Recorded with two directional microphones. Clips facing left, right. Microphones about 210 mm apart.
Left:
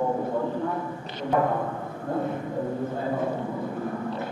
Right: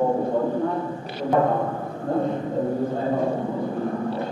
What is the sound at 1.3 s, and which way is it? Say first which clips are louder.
Speech: right 4 dB; 35° right (ahead or behind).